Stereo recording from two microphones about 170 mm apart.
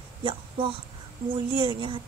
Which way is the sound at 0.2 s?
30° right (ahead or behind).